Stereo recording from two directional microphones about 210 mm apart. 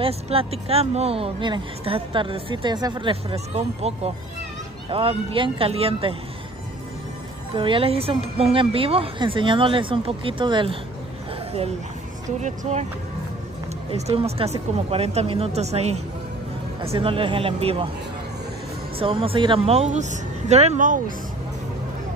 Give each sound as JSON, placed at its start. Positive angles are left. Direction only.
{"t": 0.0, "sound": "speech", "side_deg": -25}
{"t": 7.5, "sound": "speech", "side_deg": -25}
{"t": 12.3, "sound": "speech", "side_deg": -35}
{"t": 13.8, "sound": "speech", "side_deg": -30}
{"t": 18.9, "sound": "speech", "side_deg": -25}